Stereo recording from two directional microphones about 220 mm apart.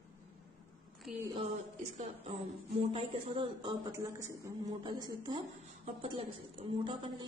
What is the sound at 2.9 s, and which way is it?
Speech, 25° right (ahead or behind).